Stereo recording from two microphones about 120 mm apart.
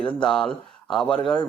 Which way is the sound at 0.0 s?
10° left (ahead or behind).